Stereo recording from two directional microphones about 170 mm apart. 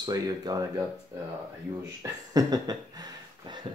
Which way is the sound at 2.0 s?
20° right (ahead or behind).